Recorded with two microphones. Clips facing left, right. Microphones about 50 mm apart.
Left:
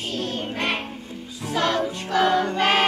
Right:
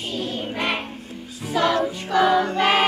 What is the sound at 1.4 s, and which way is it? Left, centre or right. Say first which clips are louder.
Music: right 2 dB; centre.